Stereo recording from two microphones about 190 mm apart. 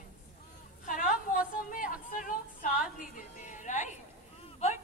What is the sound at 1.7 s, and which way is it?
A woman's voice, 45° left (ahead or behind).